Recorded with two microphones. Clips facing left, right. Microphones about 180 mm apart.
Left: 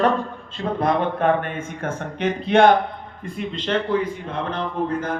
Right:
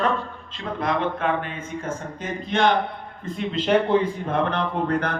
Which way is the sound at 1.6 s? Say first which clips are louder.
Left 2 dB; 65° left (ahead or behind).